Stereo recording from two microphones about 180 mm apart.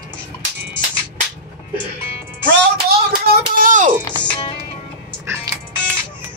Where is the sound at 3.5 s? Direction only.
45° right (ahead or behind).